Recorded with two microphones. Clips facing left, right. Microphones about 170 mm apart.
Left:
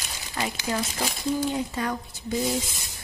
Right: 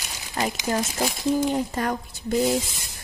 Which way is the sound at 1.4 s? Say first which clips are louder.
Right 3 dB; 45° right (ahead or behind).